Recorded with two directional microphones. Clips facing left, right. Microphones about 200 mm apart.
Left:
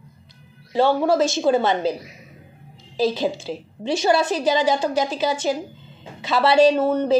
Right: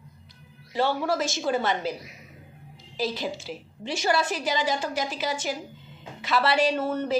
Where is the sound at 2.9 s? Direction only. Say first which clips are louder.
Left 8 dB; 30° left (ahead or behind).